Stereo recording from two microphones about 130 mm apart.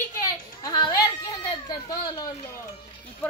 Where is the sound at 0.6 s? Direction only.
30° left (ahead or behind).